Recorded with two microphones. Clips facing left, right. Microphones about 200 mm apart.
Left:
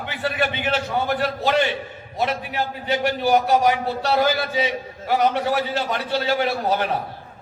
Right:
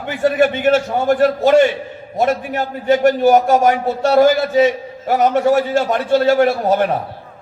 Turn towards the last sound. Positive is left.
turn(degrees=-50)  # may be behind; listen again after turning